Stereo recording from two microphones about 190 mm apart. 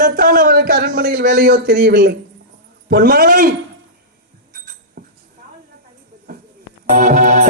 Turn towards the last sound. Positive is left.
turn(degrees=-40)  # may be behind; listen again after turning